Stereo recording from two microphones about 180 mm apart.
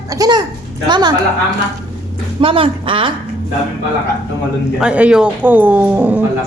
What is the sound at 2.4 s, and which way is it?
Speech, 30° right (ahead or behind).